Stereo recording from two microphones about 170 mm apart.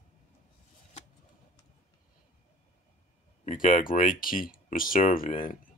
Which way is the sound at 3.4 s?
45° left (ahead or behind).